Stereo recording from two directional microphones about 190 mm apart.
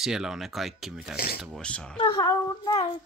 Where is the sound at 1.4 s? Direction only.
5° left (ahead or behind).